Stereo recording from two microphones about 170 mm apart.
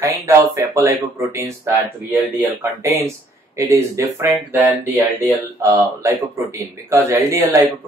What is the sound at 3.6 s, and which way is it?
Speech, 15° right (ahead or behind).